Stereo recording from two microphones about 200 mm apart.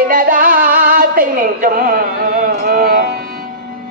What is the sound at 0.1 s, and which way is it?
Music, 45° right (ahead or behind).